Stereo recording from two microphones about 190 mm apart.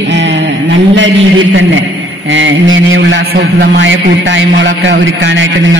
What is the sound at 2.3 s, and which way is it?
A man's voice, 85° right.